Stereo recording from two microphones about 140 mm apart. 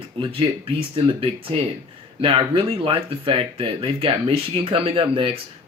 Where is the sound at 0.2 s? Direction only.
40° right (ahead or behind).